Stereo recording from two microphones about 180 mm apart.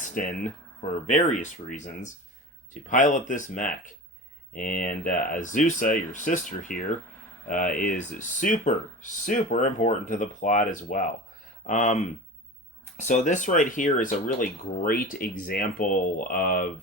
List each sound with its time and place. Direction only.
0.1 s speech: 50° left (ahead or behind)
13.0 s speech: 40° left (ahead or behind)